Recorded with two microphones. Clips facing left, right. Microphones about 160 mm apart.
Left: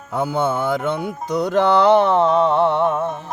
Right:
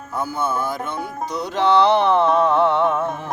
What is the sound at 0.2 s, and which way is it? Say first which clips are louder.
Music: left 3 dB; 70° left (ahead or behind).